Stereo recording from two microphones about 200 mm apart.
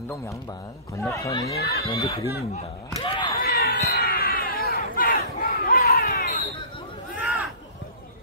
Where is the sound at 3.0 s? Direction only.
20° left (ahead or behind).